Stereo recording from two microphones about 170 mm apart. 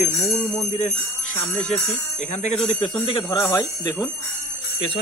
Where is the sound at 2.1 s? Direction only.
40° left (ahead or behind).